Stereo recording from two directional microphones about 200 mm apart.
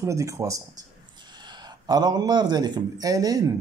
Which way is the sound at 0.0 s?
15° right (ahead or behind).